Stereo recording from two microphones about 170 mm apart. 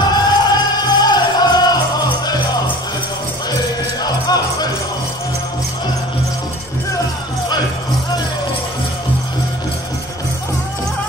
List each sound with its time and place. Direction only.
0.1 s music: 25° left (ahead or behind)
4.0 s music: 25° left (ahead or behind)